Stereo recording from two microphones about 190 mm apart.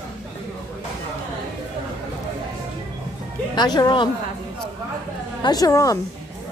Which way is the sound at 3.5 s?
20° left (ahead or behind).